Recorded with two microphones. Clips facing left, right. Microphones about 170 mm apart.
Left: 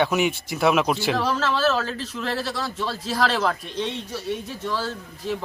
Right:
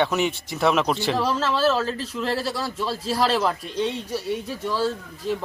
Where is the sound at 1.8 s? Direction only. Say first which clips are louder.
Right 2 dB; 30° right (ahead or behind).